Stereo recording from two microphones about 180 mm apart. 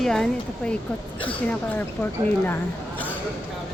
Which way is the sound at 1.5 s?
10° left (ahead or behind).